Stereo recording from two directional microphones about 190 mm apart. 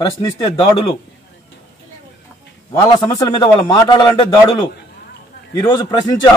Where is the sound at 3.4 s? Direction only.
20° left (ahead or behind).